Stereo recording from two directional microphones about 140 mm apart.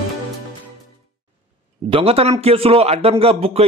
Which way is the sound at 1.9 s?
45° right (ahead or behind).